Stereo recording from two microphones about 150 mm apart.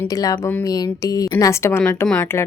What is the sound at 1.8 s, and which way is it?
Speech, 5° left (ahead or behind).